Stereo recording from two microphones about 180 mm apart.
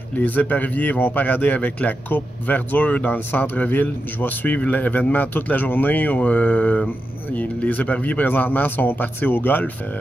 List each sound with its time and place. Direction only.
0.1 s speech: 10° left (ahead or behind)